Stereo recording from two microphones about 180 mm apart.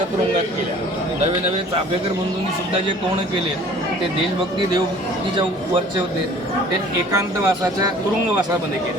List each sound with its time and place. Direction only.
7.1 s speech: 20° right (ahead or behind)